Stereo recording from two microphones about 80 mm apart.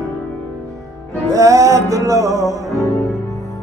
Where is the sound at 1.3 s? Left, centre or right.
Right.